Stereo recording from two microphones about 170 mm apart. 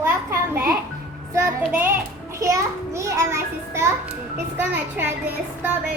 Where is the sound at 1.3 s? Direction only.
15° right (ahead or behind).